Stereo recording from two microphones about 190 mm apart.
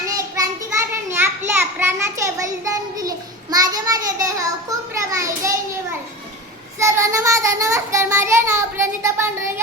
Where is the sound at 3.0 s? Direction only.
20° right (ahead or behind).